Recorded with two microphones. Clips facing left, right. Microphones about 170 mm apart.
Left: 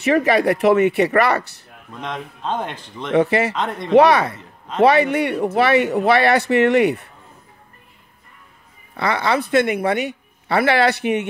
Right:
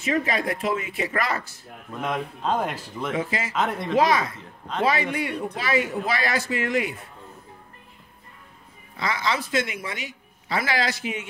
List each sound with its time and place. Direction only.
0.0 s speech: 70° left (ahead or behind)
2.0 s speech: 5° right (ahead or behind)
3.1 s speech: 65° left (ahead or behind)
3.5 s speech: centre (ahead or behind)
3.9 s speech: 65° left (ahead or behind)
4.4 s a sound: centre (ahead or behind)
4.8 s speech: 65° left (ahead or behind)
8.9 s a woman's voice: 65° left (ahead or behind)